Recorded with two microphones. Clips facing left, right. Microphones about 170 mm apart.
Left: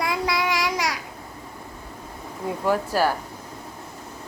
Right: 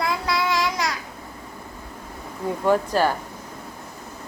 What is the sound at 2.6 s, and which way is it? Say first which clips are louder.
Child singing: right 2 dB; 10° left (ahead or behind).